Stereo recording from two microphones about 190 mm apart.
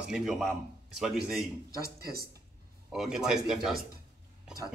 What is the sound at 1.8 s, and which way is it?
Speech, 50° right (ahead or behind).